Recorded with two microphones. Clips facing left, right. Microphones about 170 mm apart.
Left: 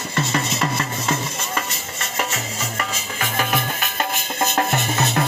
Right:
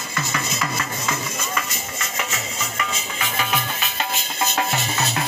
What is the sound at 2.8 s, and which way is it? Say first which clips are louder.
Music: even; 45° left (ahead or behind).